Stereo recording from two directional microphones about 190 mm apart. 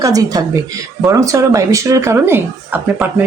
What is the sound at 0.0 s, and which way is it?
A woman's voice, 20° right (ahead or behind).